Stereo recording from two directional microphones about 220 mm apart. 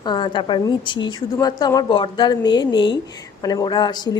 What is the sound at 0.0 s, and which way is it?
A woman's voice, 20° left (ahead or behind).